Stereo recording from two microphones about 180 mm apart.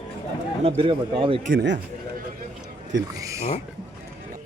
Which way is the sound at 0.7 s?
30° right (ahead or behind).